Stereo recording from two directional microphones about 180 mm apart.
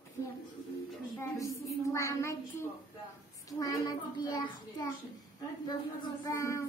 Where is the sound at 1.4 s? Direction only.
15° left (ahead or behind).